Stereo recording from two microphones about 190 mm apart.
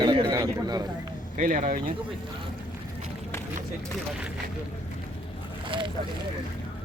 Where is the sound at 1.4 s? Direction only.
45° right (ahead or behind).